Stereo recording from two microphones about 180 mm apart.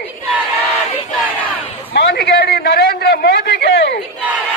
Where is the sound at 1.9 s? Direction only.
65° left (ahead or behind).